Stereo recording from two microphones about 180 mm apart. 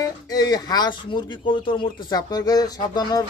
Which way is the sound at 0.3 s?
20° left (ahead or behind).